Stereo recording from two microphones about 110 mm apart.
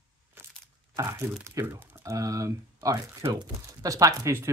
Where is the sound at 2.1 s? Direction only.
30° right (ahead or behind).